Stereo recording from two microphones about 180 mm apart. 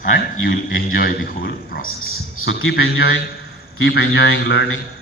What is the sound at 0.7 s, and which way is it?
Speech, 55° left (ahead or behind).